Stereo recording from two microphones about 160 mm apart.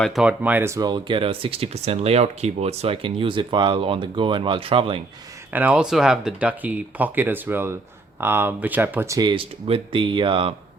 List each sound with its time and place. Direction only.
0.0 s speech: 5° right (ahead or behind); by 4.9 s 35° right (ahead or behind)
5.5 s speech: 10° right (ahead or behind)
9.3 s speech: 35° right (ahead or behind)